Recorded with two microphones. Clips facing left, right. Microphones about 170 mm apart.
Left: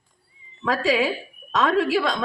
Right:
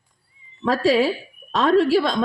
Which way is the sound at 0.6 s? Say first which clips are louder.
Right 4 dB; 35° right (ahead or behind).